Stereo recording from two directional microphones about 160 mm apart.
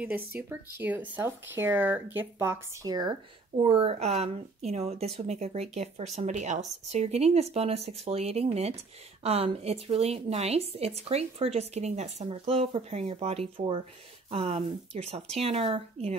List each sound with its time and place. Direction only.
0.4 s speech: 10° right (ahead or behind)
3.6 s a woman's voice: 40° right (ahead or behind)